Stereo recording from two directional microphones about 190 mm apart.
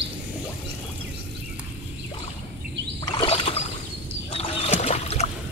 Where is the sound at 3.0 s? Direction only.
25° left (ahead or behind).